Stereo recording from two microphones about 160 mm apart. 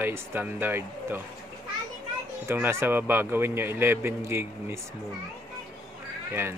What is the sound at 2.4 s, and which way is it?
A man's voice, 15° right (ahead or behind).